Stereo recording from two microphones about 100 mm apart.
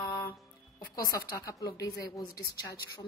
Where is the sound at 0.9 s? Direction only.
35° left (ahead or behind).